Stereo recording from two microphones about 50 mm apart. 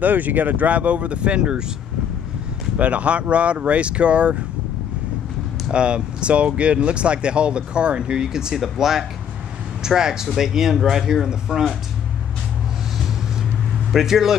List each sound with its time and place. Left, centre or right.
0.0 s speech: right
2.8 s speech: right
5.7 s speech: right
13.9 s speech: centre